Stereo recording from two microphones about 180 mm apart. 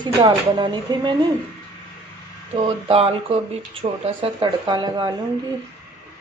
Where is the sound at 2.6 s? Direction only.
35° right (ahead or behind).